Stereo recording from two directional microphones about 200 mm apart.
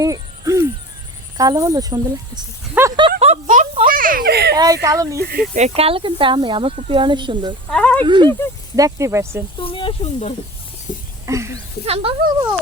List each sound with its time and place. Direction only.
0.0 s owl: 15° right (ahead or behind)
1.4 s speech: 20° right (ahead or behind)
3.2 s a sound: 35° right (ahead or behind); by 4.5 s 55° right (ahead or behind)
4.5 s speech: 20° right (ahead or behind)
5.2 s speech: 50° right (ahead or behind)
5.5 s speech: 30° right (ahead or behind)
7.7 s speech: 5° left (ahead or behind)
8.0 s speech: 25° right (ahead or behind)
9.6 s snake: 25° left (ahead or behind)
10.9 s a sound: 40° left (ahead or behind)
11.3 s speech: 15° right (ahead or behind)